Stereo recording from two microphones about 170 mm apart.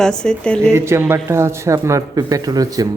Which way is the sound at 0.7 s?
15° right (ahead or behind).